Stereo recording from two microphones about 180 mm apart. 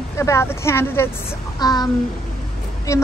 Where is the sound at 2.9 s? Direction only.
15° left (ahead or behind).